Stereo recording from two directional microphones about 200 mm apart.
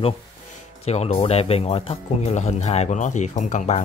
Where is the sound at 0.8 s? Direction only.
30° left (ahead or behind).